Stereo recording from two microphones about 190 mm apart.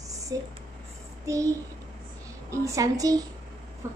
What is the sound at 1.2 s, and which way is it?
Speech, 15° right (ahead or behind).